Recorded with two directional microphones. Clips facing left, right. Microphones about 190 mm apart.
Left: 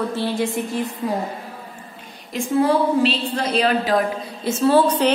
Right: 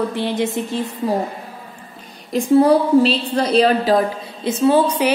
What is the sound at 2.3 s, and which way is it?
A woman's voice, 35° right (ahead or behind).